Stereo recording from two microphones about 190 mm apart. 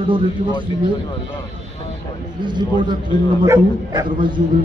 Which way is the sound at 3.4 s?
25° right (ahead or behind).